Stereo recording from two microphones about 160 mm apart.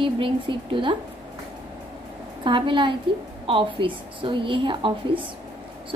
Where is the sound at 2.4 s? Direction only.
30° right (ahead or behind).